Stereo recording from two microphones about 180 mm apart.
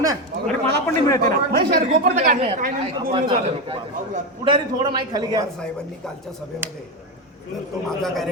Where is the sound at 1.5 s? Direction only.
55° right (ahead or behind).